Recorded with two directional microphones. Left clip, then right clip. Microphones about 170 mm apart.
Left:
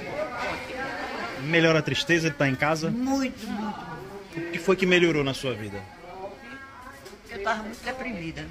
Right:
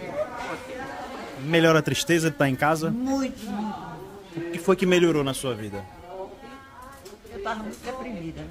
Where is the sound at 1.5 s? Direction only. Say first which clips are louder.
Right 2 dB; 20° right (ahead or behind).